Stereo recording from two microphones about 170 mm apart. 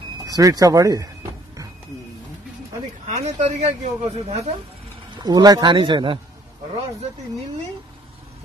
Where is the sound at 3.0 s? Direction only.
40° right (ahead or behind).